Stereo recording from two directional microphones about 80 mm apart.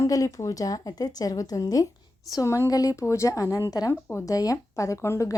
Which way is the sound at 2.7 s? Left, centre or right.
Left.